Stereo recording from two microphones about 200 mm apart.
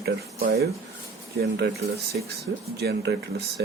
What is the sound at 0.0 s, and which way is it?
Speech, 50° right (ahead or behind).